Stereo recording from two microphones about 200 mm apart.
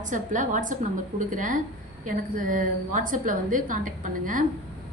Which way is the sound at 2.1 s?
40° right (ahead or behind).